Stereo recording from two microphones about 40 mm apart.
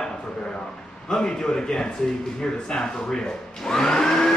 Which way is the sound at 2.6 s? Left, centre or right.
Centre.